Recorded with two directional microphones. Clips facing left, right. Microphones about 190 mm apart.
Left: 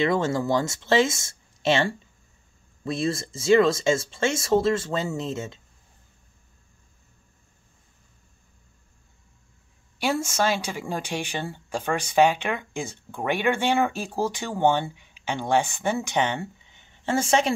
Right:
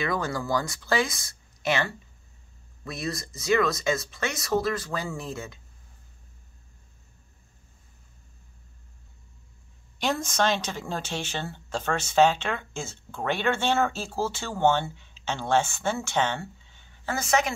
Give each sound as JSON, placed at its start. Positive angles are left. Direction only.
{"t": 0.0, "sound": "speech", "side_deg": 25}
{"t": 9.9, "sound": "speech", "side_deg": 10}